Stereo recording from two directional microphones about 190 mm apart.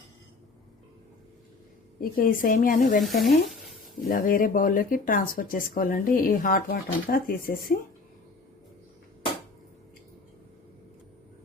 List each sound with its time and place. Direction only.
2.0 s speech: 50° left (ahead or behind)
3.0 s sizzle: centre (ahead or behind)
4.1 s speech: 45° left (ahead or behind)